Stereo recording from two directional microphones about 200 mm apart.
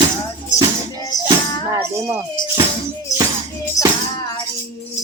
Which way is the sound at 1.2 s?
15° right (ahead or behind).